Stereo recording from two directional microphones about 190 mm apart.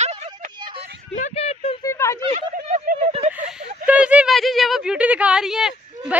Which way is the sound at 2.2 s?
35° right (ahead or behind).